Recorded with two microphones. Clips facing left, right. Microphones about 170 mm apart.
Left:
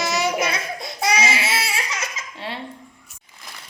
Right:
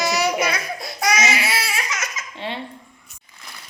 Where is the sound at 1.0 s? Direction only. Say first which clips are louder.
Right 1 dB; 30° left (ahead or behind).